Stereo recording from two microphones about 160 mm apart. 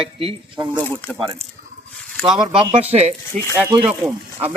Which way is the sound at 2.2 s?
5° right (ahead or behind).